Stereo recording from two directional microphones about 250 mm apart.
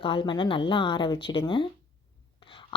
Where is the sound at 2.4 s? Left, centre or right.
Centre.